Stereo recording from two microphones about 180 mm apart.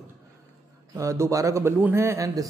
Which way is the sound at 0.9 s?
15° right (ahead or behind).